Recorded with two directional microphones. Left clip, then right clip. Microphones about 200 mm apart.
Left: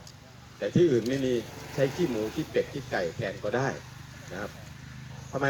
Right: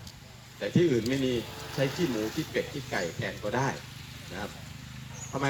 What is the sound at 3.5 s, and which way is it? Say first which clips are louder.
Speech: left 1 dB; 40° right (ahead or behind).